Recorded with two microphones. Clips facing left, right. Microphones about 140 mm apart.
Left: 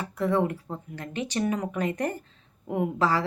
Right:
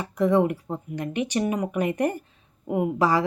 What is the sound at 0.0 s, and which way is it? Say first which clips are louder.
Speech: right 4 dB; 15° right (ahead or behind).